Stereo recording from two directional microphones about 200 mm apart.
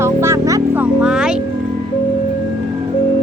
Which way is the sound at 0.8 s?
5° right (ahead or behind).